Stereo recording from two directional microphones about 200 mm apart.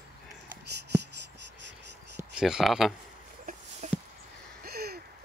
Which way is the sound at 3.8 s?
35° right (ahead or behind).